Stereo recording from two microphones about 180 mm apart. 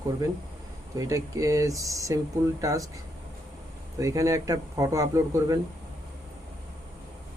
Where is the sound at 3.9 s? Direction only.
20° right (ahead or behind).